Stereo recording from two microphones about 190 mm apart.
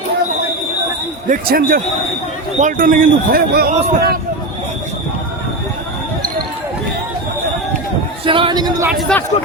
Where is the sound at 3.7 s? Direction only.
35° right (ahead or behind).